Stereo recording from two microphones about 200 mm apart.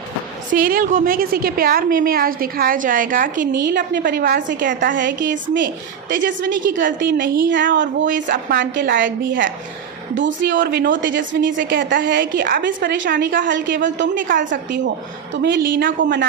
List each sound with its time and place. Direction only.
0.5 s a woman's voice: 45° right (ahead or behind)
7.0 s a woman's voice: 50° right (ahead or behind)
8.0 s a woman's voice: 45° right (ahead or behind)
10.2 s a woman's voice: 65° right (ahead or behind)
10.6 s a woman's voice: 45° right (ahead or behind); by 11.6 s 65° right (ahead or behind)
11.6 s a woman's voice: 45° right (ahead or behind); by 12.2 s 60° right (ahead or behind)
12.2 s a woman's voice: 45° right (ahead or behind); by 13.7 s 65° right (ahead or behind)
14.3 s a woman's voice: 45° right (ahead or behind)